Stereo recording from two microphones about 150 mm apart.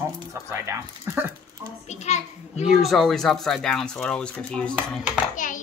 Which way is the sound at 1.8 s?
50° left (ahead or behind).